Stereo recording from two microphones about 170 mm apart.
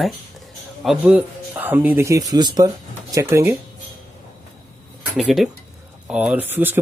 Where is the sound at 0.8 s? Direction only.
10° right (ahead or behind).